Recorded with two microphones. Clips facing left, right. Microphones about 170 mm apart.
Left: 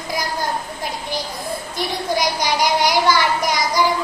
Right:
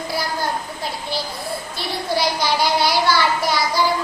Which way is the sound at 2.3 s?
15° left (ahead or behind).